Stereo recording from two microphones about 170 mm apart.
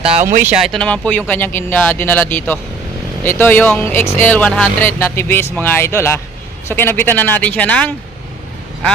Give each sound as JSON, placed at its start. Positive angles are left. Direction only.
{"t": 0.2, "sound": "speech", "side_deg": -50}
{"t": 0.4, "sound": "speech", "side_deg": 0}